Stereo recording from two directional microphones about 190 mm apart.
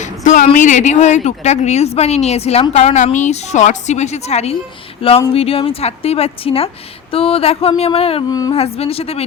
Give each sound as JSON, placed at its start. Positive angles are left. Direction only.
{"t": 0.0, "sound": "speech", "side_deg": 40}
{"t": 8.3, "sound": "speech", "side_deg": 20}
{"t": 8.5, "sound": "speech", "side_deg": 30}